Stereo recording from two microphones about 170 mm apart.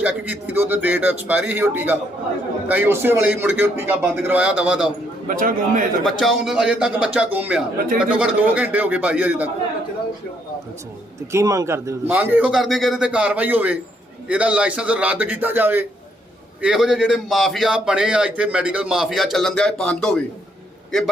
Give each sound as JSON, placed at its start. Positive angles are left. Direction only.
{"t": 0.0, "sound": "a man's voice", "side_deg": -10}
{"t": 5.3, "sound": "a man's voice", "side_deg": -55}
{"t": 6.1, "sound": "a man's voice", "side_deg": 0}
{"t": 11.3, "sound": "a man's voice", "side_deg": -15}